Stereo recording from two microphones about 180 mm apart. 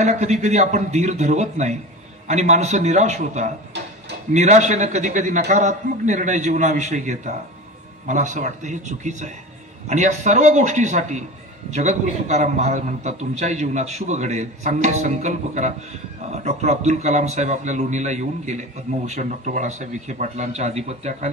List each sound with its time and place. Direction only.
0.0 s a man's voice: 40° right (ahead or behind)